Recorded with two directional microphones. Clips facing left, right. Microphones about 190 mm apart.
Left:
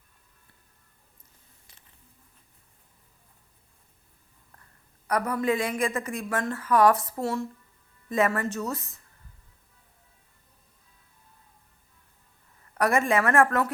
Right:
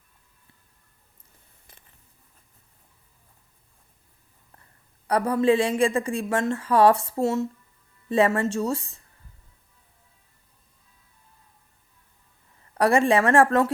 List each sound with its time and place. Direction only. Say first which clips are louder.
5.0 s a woman's voice: right 5 dB; 30° right (ahead or behind)
12.7 s speech: right 4 dB; 30° right (ahead or behind)